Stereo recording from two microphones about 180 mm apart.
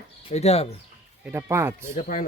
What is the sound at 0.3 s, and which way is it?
Speech, 35° left (ahead or behind).